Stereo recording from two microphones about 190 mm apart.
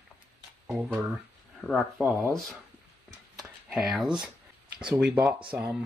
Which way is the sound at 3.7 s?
Centre (ahead or behind).